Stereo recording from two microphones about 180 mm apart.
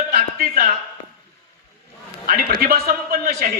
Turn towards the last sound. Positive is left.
turn(degrees=-55)  # may be behind; listen again after turning